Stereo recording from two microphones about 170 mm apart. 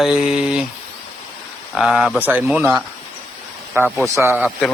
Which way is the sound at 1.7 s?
Centre (ahead or behind).